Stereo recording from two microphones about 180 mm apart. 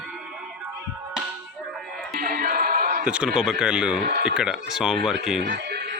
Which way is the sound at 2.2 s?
50° right (ahead or behind).